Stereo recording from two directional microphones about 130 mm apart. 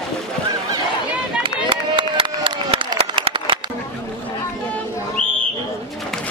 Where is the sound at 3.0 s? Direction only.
45° right (ahead or behind).